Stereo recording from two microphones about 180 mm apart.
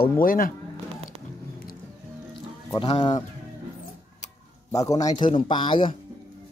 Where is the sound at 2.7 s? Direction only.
25° left (ahead or behind).